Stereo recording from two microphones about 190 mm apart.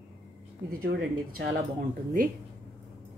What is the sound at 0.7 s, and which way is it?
Speech, 50° right (ahead or behind).